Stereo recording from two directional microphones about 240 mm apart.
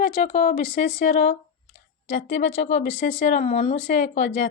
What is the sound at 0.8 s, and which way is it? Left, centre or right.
Speech, left.